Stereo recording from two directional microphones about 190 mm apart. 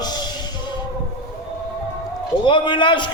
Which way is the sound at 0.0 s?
20° left (ahead or behind).